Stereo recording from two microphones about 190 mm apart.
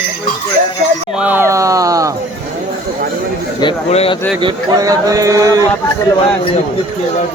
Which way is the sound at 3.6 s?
30° left (ahead or behind).